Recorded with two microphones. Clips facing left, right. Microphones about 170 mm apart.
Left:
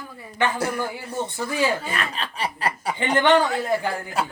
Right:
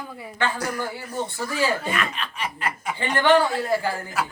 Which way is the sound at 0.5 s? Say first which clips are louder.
Left 3 dB; 25° left (ahead or behind).